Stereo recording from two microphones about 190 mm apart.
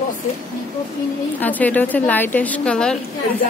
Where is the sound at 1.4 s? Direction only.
10° left (ahead or behind).